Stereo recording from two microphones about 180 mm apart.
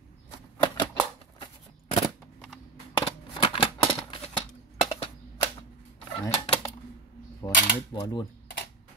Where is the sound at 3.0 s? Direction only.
30° left (ahead or behind).